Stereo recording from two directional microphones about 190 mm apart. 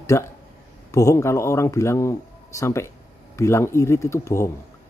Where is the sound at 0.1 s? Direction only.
15° left (ahead or behind).